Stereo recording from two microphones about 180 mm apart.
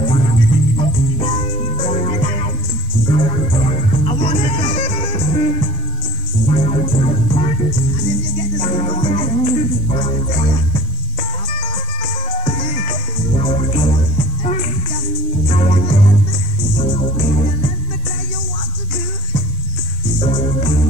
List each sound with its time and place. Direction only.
0.0 s music: 30° left (ahead or behind)
8.5 s music: 35° left (ahead or behind)
20.2 s music: 35° left (ahead or behind)